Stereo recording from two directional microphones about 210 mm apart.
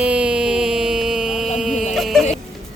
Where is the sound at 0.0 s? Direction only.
5° right (ahead or behind).